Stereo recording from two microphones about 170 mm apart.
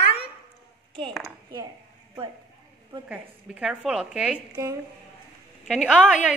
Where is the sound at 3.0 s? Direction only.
5° right (ahead or behind).